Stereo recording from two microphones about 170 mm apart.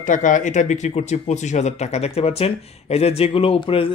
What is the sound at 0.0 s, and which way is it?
Speech, 50° left (ahead or behind).